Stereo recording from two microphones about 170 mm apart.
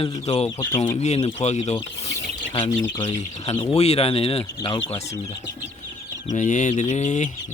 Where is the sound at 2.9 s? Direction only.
25° left (ahead or behind).